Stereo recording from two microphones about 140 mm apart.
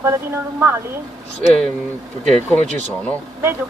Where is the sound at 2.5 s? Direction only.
10° left (ahead or behind).